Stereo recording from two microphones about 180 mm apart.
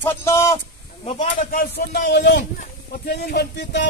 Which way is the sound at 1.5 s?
65° left (ahead or behind).